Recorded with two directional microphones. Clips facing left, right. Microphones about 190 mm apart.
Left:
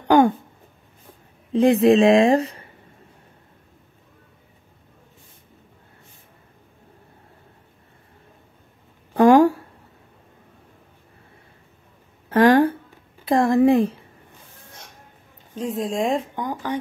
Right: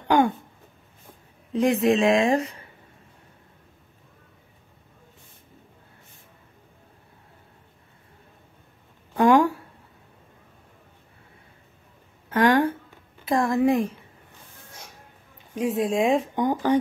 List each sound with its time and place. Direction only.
1.5 s speech: 30° left (ahead or behind)
9.1 s a sound: 40° left (ahead or behind)
12.3 s a sound: 30° left (ahead or behind)
13.6 s speech: 30° left (ahead or behind)
15.7 s speech: centre (ahead or behind)
16.3 s speech: 25° right (ahead or behind)